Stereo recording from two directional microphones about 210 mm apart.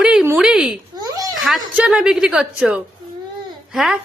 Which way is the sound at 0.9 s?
20° right (ahead or behind).